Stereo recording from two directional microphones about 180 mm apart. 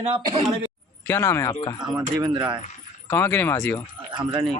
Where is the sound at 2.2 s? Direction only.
25° right (ahead or behind).